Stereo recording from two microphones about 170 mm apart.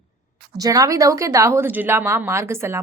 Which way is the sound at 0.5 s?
20° right (ahead or behind).